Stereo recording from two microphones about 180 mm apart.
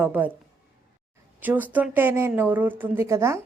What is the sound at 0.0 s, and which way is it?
Speech, 10° right (ahead or behind).